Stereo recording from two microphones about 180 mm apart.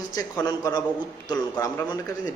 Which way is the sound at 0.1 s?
20° left (ahead or behind).